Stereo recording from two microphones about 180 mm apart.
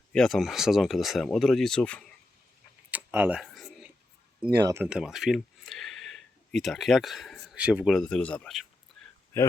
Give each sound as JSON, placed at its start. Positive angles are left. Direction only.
{"t": 0.1, "sound": "speech", "side_deg": 5}
{"t": 2.9, "sound": "tick-tock", "side_deg": -10}
{"t": 3.4, "sound": "a sound", "side_deg": 0}
{"t": 4.4, "sound": "speech", "side_deg": -25}
{"t": 4.8, "sound": "speech", "side_deg": -5}